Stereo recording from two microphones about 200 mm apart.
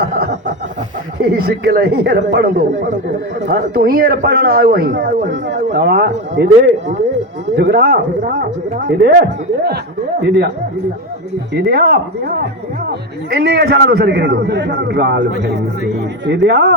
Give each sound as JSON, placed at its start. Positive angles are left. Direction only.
{"t": 1.2, "sound": "speech", "side_deg": -50}
{"t": 5.7, "sound": "a man's voice", "side_deg": -55}
{"t": 7.5, "sound": "a man's voice", "side_deg": -55}
{"t": 11.5, "sound": "a man's voice", "side_deg": -50}